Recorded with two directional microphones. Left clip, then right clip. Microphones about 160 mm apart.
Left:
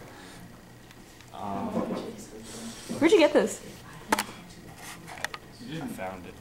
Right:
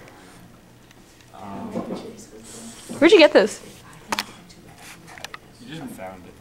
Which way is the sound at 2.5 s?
Centre (ahead or behind).